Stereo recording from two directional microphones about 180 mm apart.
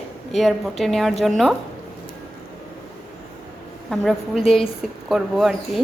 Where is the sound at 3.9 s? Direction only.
Centre (ahead or behind).